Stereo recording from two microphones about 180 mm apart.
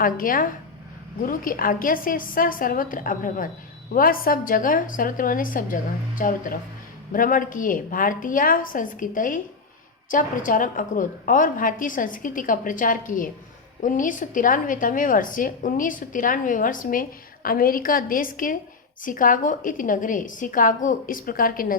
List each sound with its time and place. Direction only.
0.0 s a woman's voice: 50° left (ahead or behind)